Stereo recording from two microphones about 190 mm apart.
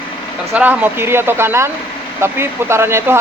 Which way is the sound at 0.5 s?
10° right (ahead or behind).